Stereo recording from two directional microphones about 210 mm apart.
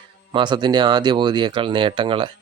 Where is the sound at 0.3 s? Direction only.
20° right (ahead or behind).